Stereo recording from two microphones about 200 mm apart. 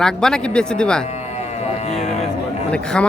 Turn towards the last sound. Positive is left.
turn(degrees=5)  # may be behind; listen again after turning